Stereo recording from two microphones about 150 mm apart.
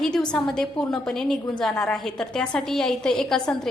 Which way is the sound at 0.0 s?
5° left (ahead or behind).